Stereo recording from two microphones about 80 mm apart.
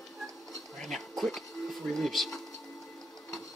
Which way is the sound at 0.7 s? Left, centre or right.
Centre.